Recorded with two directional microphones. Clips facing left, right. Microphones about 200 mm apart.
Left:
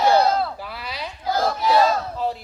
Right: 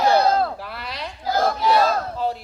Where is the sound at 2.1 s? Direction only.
Centre (ahead or behind).